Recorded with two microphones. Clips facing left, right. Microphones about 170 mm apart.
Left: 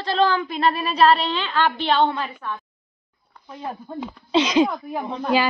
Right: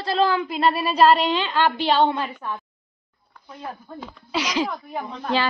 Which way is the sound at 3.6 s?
20° left (ahead or behind).